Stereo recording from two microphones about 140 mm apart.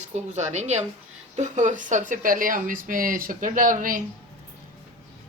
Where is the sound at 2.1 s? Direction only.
75° right (ahead or behind).